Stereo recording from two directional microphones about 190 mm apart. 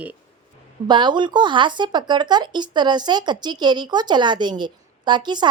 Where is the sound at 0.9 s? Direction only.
25° right (ahead or behind).